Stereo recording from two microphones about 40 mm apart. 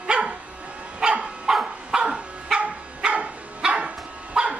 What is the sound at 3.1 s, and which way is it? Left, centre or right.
Dog, right.